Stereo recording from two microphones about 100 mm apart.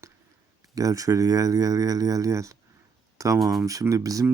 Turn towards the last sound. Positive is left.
turn(degrees=-35)  # may be behind; listen again after turning